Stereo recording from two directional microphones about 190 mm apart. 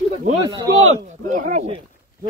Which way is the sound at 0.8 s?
40° right (ahead or behind).